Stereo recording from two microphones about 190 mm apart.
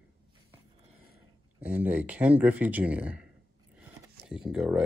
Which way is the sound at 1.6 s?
10° right (ahead or behind).